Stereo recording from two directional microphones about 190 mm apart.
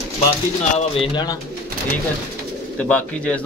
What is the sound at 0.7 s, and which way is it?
Speech, 25° left (ahead or behind).